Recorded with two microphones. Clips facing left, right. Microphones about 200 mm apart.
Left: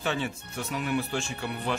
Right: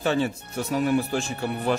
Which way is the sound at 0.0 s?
40° right (ahead or behind).